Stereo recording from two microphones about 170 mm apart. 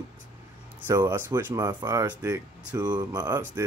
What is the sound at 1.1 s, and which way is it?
Speech, 15° right (ahead or behind).